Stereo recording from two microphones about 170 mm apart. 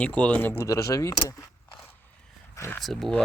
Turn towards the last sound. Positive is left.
turn(degrees=0)  # may be behind; listen again after turning